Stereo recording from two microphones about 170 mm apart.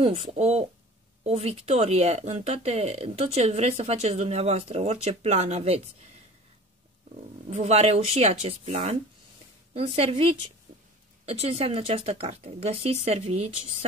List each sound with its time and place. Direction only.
0.0 s speech: 35° right (ahead or behind)
7.4 s speech: 40° right (ahead or behind)